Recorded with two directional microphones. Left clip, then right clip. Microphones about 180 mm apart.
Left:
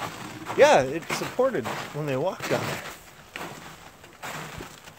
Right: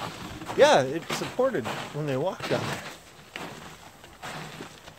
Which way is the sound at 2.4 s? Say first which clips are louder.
Left 1 dB; 10° left (ahead or behind).